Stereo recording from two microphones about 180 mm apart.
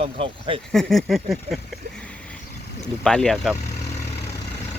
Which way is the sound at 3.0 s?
5° left (ahead or behind).